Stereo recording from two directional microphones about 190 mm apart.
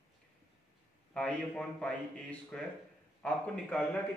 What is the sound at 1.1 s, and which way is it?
A man's voice, 5° left (ahead or behind).